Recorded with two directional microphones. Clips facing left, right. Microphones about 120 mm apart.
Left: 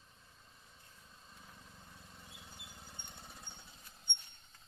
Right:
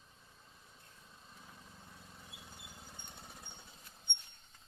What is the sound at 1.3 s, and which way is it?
Vehicle, 5° right (ahead or behind).